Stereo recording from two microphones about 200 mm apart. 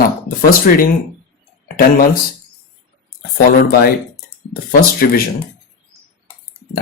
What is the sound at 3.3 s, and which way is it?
Speech, 50° left (ahead or behind).